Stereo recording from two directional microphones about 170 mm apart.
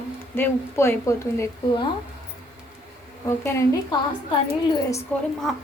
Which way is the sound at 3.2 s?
15° left (ahead or behind).